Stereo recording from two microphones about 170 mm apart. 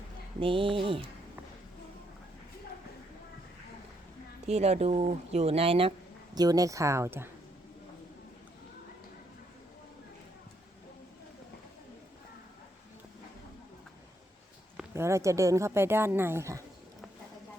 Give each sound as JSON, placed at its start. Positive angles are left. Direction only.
{"t": 0.3, "sound": "speech", "side_deg": -30}
{"t": 4.4, "sound": "speech", "side_deg": -40}
{"t": 6.3, "sound": "speech", "side_deg": -20}
{"t": 14.8, "sound": "speech", "side_deg": -15}